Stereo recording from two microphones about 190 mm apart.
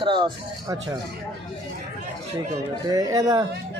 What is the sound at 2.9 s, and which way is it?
Speech, 20° right (ahead or behind).